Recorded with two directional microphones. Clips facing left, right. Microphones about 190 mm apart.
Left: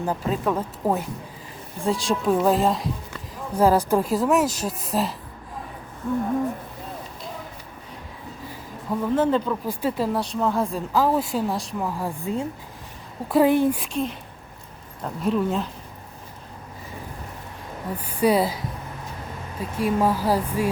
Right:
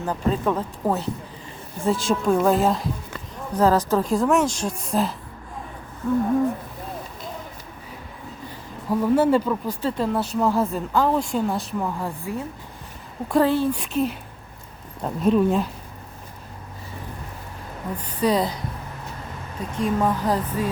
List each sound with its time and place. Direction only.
0.0 s speech: 5° left (ahead or behind)
1.8 s speech: centre (ahead or behind)
3.5 s speech: 10° left (ahead or behind)
8.9 s speech: 10° right (ahead or behind)
9.6 s speech: 10° left (ahead or behind)
10.2 s speech: 5° right (ahead or behind); by 13.7 s 15° left (ahead or behind)
13.7 s speech: centre (ahead or behind)
15.0 s speech: 20° right (ahead or behind)
17.9 s speech: 10° left (ahead or behind)
19.7 s speech: 5° left (ahead or behind)